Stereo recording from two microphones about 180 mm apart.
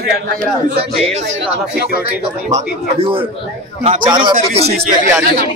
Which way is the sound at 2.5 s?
30° right (ahead or behind).